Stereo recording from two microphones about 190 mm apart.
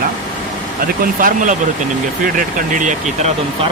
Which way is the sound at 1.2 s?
45° right (ahead or behind).